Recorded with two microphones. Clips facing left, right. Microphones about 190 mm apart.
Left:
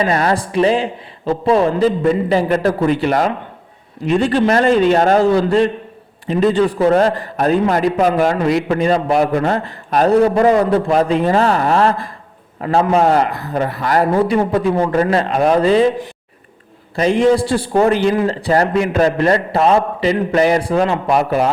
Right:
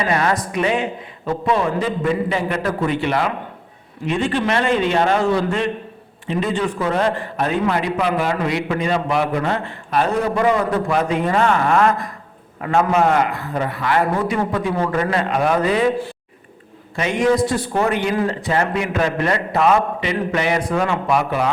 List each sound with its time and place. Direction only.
0.0 s a man's voice: 35° left (ahead or behind)
16.9 s a man's voice: 35° left (ahead or behind)